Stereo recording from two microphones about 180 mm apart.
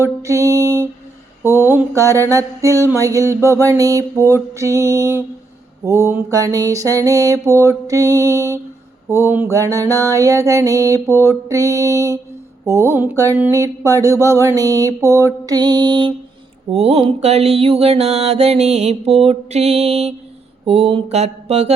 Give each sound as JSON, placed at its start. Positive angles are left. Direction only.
{"t": 0.0, "sound": "mantra", "side_deg": -15}